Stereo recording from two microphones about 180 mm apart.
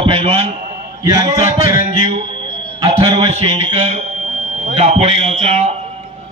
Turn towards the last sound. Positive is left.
turn(degrees=-35)  # may be behind; listen again after turning